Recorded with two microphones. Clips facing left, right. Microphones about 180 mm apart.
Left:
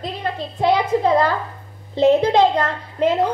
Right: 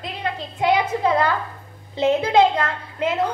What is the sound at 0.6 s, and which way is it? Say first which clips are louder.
A child's voice: left 2 dB; 35° left (ahead or behind).